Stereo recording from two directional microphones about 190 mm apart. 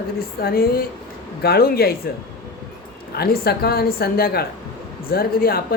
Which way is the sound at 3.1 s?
55° left (ahead or behind).